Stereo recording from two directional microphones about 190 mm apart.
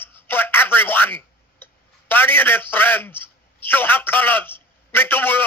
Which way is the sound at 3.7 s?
10° left (ahead or behind).